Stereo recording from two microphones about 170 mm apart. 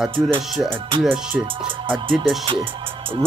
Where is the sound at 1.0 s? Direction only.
5° right (ahead or behind).